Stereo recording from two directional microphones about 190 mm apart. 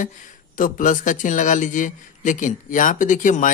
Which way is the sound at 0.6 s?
45° left (ahead or behind).